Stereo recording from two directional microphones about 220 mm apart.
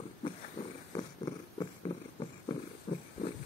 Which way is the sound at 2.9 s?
25° left (ahead or behind).